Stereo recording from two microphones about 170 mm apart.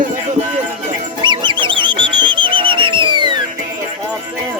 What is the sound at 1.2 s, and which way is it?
Music, 25° right (ahead or behind).